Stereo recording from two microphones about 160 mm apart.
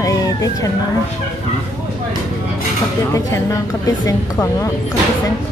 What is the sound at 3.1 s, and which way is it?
Speech, 20° left (ahead or behind).